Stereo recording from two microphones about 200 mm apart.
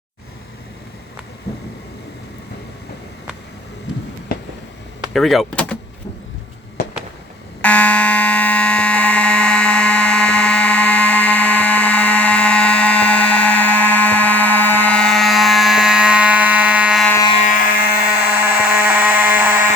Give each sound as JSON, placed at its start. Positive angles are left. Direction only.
{"t": 5.1, "sound": "speech", "side_deg": 0}
{"t": 7.6, "sound": "fire alarm", "side_deg": 5}
{"t": 17.1, "sound": "a sound", "side_deg": 15}
{"t": 17.4, "sound": "a sound", "side_deg": 45}
{"t": 18.0, "sound": "fire alarm", "side_deg": 50}
{"t": 18.3, "sound": "frog", "side_deg": -10}